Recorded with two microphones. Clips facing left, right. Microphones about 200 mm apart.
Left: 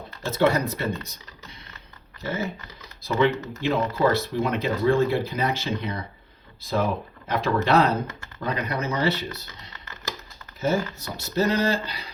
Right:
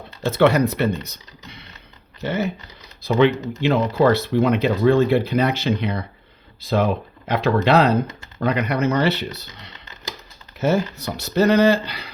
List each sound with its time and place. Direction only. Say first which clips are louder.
0.3 s speech: right 5 dB; 70° right (ahead or behind)
3.3 s speech: right 5 dB; 15° right (ahead or behind)
3.9 s speech: right 5 dB; 70° right (ahead or behind)
10.6 s speech: right 4 dB; 70° right (ahead or behind)